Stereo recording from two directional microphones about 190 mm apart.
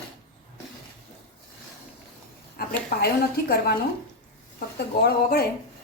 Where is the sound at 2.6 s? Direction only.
55° left (ahead or behind).